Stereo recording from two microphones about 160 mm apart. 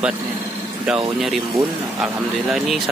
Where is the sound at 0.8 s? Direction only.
5° right (ahead or behind).